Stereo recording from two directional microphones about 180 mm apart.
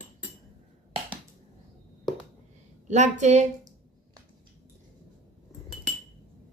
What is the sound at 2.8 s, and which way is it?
Speech, 40° right (ahead or behind).